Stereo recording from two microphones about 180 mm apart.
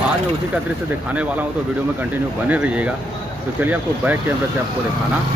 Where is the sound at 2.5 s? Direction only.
10° right (ahead or behind).